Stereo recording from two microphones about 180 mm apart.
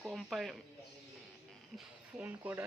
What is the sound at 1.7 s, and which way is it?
Speech, 10° right (ahead or behind).